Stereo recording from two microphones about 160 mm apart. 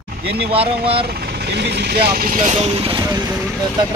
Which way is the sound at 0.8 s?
35° right (ahead or behind).